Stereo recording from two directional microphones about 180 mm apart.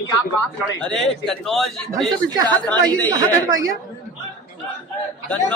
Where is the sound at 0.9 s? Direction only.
Centre (ahead or behind).